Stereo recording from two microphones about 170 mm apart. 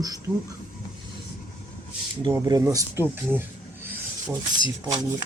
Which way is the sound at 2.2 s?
20° right (ahead or behind).